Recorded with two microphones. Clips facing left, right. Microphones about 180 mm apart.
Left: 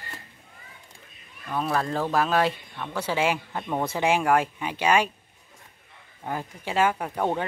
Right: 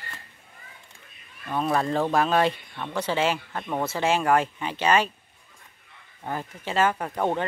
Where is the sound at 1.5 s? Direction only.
Centre (ahead or behind).